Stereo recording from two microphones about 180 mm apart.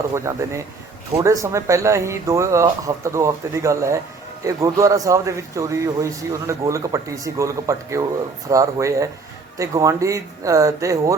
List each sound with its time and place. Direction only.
0.1 s a man's voice: 15° right (ahead or behind)